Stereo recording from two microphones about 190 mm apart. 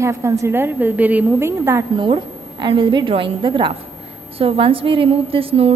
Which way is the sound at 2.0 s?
25° right (ahead or behind).